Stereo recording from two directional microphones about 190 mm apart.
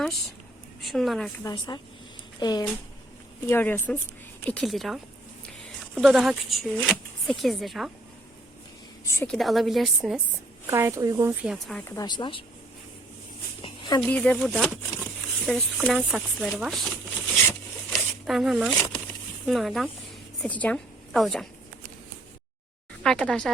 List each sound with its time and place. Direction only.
0.8 s a woman's voice: centre (ahead or behind)
1.5 s a woman's voice: 20° left (ahead or behind)
3.5 s speech: 10° left (ahead or behind)
9.0 s a woman's voice: 15° left (ahead or behind)
9.3 s speech: centre (ahead or behind)
10.7 s a woman's voice: 15° right (ahead or behind)
11.4 s speech: centre (ahead or behind)
11.9 s a woman's voice: 20° left (ahead or behind)
13.6 s a sound: 25° left (ahead or behind)
14.0 s a woman's voice: 5° left (ahead or behind)
23.0 s speech: 5° left (ahead or behind)